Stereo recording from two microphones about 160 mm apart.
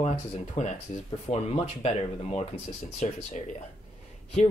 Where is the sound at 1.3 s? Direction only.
30° left (ahead or behind).